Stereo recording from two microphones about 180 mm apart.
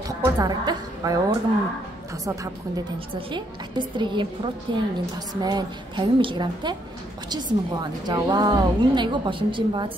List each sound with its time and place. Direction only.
0.2 s a woman's voice: 20° right (ahead or behind)
3.2 s a woman's voice: 25° right (ahead or behind)